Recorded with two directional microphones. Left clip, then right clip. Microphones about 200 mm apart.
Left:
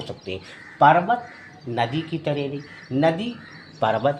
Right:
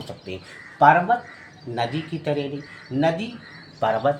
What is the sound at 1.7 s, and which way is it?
Speech, 25° left (ahead or behind).